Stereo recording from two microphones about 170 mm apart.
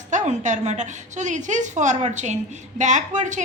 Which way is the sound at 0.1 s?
45° right (ahead or behind).